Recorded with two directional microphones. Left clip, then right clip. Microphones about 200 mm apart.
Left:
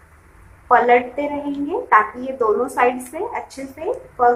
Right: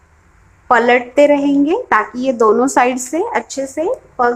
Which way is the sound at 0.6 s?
55° right (ahead or behind).